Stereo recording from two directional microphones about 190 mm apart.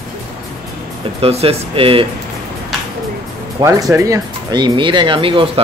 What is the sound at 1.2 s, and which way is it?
Speech, 30° right (ahead or behind).